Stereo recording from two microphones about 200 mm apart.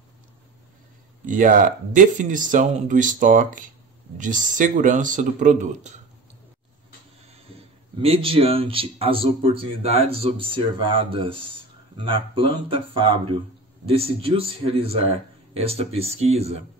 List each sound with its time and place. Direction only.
1.2 s speech: 40° right (ahead or behind)
7.5 s speech: 30° right (ahead or behind)
13.8 s speech: 30° right (ahead or behind)